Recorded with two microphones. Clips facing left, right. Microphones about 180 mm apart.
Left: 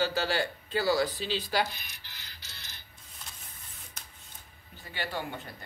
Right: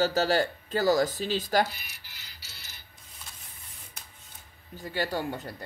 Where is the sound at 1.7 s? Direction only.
10° right (ahead or behind).